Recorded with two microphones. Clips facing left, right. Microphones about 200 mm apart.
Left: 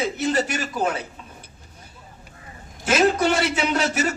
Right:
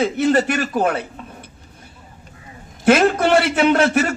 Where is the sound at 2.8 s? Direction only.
55° right (ahead or behind).